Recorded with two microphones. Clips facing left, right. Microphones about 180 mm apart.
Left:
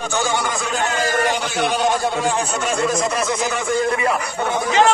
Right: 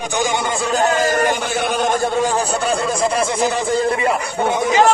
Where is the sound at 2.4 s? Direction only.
35° right (ahead or behind).